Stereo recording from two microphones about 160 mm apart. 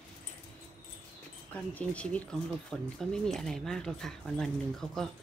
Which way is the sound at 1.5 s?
10° left (ahead or behind).